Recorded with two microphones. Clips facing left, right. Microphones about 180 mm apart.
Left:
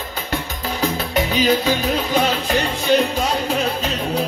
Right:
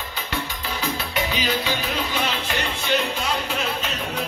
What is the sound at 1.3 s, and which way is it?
Music, 45° left (ahead or behind).